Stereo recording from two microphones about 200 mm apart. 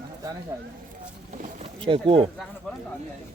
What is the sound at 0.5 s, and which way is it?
Speech, 15° right (ahead or behind).